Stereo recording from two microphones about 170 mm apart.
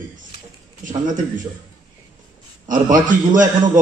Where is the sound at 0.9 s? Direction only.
50° right (ahead or behind).